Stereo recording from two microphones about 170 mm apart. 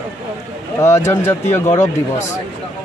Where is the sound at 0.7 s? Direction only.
15° left (ahead or behind).